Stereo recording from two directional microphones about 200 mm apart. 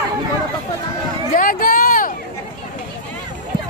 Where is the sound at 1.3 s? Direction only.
45° left (ahead or behind).